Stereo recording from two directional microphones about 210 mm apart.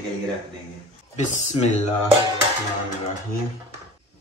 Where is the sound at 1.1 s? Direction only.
35° left (ahead or behind).